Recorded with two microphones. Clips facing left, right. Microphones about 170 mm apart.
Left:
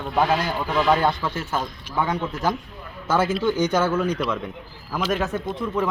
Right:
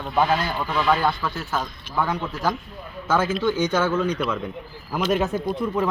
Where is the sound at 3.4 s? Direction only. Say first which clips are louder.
Left 1 dB; 10° left (ahead or behind).